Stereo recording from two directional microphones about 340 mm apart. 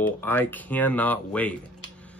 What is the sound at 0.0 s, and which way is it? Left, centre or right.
Speech, centre.